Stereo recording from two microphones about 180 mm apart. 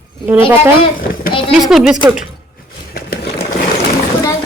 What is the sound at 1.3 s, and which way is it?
Speech, 30° left (ahead or behind).